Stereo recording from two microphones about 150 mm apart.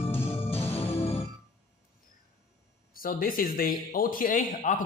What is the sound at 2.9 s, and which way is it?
Speech, 70° left (ahead or behind).